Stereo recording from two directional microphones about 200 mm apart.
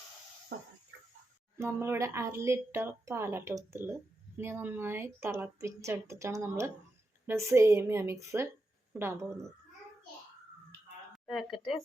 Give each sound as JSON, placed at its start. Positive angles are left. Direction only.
{"t": 0.5, "sound": "dog", "side_deg": -55}
{"t": 1.5, "sound": "speech", "side_deg": -10}
{"t": 11.3, "sound": "speech", "side_deg": 0}